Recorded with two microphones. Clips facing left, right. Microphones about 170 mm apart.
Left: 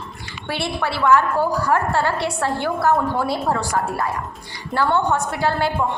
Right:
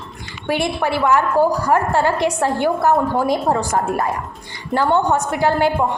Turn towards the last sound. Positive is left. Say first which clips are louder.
# right 4 dB
turn(degrees=-15)  # may be behind; listen again after turning